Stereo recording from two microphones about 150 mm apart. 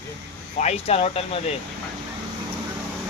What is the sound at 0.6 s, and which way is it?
Speech, 45° left (ahead or behind).